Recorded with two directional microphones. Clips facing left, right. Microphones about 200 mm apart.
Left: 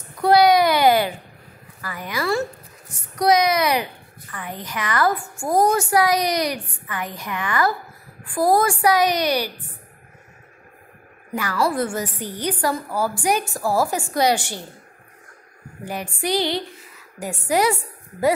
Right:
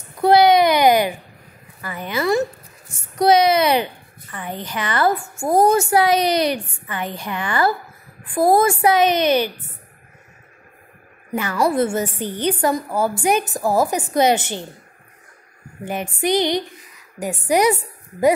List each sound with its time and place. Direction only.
0.2 s a sound: 25° right (ahead or behind)
1.8 s a woman's voice: 25° right (ahead or behind)
11.3 s a woman's voice: 25° right (ahead or behind)
15.8 s a woman's voice: 20° right (ahead or behind)